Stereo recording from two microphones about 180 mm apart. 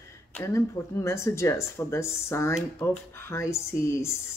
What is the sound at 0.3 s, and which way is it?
Speech, 15° left (ahead or behind).